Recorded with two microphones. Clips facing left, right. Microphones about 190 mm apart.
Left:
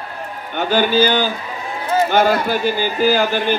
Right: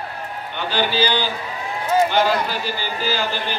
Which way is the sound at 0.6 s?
45° left (ahead or behind).